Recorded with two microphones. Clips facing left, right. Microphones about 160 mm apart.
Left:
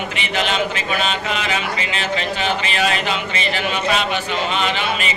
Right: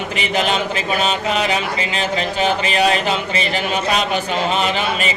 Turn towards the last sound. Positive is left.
turn(degrees=-40)  # may be behind; listen again after turning